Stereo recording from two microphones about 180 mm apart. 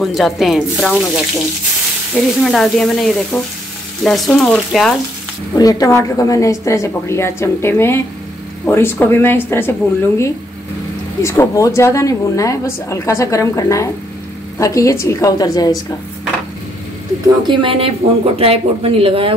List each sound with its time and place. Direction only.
0.0 s speech: centre (ahead or behind)
5.6 s a woman's voice: 20° left (ahead or behind)
17.2 s speech: 25° right (ahead or behind)